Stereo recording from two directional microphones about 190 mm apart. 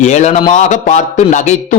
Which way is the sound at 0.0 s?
35° left (ahead or behind).